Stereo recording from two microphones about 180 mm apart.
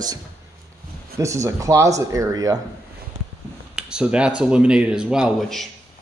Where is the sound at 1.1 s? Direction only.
15° right (ahead or behind).